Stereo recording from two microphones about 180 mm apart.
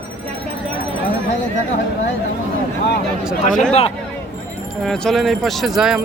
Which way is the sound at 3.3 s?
50° left (ahead or behind).